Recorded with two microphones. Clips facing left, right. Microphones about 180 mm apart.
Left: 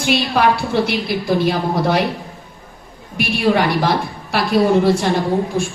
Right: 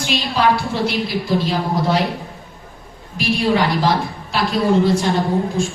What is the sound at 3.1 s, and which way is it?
Speech, 55° left (ahead or behind).